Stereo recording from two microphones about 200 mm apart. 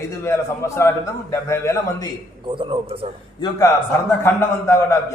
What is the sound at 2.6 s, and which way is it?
Speech, 25° right (ahead or behind).